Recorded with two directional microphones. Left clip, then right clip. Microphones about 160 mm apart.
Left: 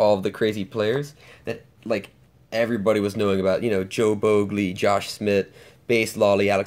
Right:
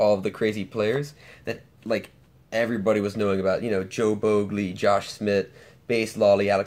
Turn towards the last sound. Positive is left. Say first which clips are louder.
# even
turn(degrees=40)  # may be behind; listen again after turning